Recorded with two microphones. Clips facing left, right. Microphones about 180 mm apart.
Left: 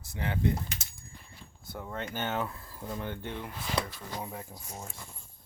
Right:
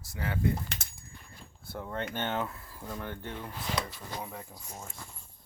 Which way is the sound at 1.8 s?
5° left (ahead or behind).